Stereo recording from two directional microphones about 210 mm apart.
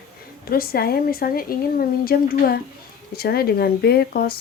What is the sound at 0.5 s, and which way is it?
Speech, 45° left (ahead or behind).